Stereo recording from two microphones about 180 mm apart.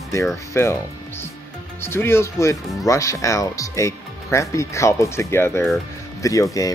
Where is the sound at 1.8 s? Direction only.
15° left (ahead or behind).